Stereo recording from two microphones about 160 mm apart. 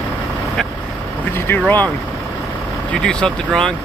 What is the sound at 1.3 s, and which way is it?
Speech, 15° left (ahead or behind).